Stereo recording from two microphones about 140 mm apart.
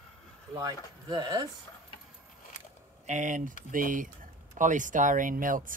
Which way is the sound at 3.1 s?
60° right (ahead or behind).